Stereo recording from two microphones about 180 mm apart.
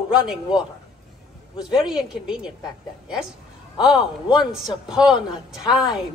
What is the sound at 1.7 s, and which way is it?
Speech, 5° right (ahead or behind).